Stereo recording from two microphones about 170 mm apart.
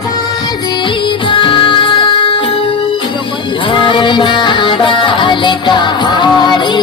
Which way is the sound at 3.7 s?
30° left (ahead or behind).